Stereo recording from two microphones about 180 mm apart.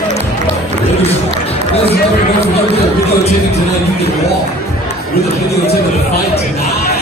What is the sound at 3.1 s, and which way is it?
Chatter, 35° left (ahead or behind).